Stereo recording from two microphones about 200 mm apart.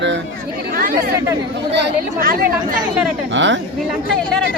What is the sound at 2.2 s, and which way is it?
Speech, 45° right (ahead or behind).